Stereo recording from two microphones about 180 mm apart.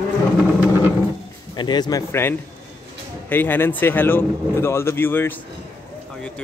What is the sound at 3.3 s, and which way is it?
Speech, 10° left (ahead or behind).